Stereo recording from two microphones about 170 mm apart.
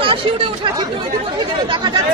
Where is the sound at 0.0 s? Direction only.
30° right (ahead or behind).